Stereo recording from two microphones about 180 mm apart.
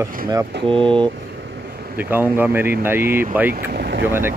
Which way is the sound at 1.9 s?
10° right (ahead or behind).